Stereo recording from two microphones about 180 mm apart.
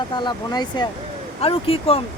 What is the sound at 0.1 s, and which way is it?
Speech, 25° left (ahead or behind).